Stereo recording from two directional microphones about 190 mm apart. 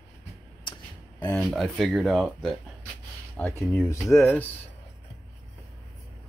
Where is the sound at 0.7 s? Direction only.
25° left (ahead or behind).